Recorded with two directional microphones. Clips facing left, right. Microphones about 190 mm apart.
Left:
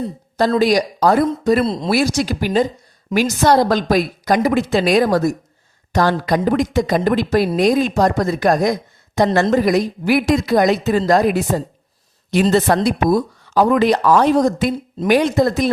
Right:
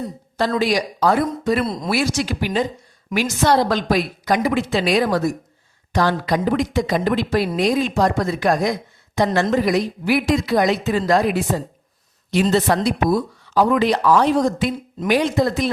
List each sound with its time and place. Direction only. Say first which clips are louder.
0.3 s a woman's voice: left 5 dB; 40° left (ahead or behind)
1.6 s speech: left 4 dB; 25° left (ahead or behind)
1.9 s a woman's voice: left 2 dB; 40° left (ahead or behind)